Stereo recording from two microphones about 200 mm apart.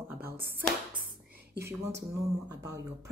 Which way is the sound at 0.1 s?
10° right (ahead or behind).